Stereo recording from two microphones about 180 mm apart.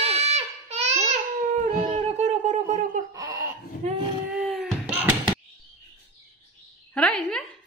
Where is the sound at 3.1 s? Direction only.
15° right (ahead or behind).